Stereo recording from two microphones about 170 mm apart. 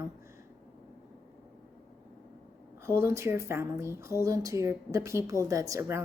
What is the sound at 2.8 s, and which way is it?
Speech, 15° right (ahead or behind).